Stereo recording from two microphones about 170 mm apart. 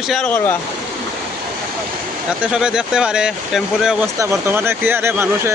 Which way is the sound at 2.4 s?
5° right (ahead or behind).